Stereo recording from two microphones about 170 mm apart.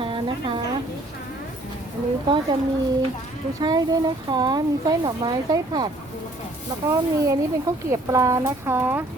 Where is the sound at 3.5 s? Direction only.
20° right (ahead or behind).